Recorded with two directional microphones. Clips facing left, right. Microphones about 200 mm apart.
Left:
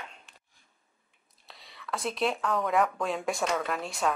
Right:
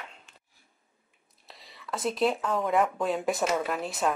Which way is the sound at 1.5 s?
Centre (ahead or behind).